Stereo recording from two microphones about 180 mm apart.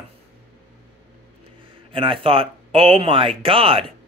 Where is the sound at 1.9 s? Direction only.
30° right (ahead or behind).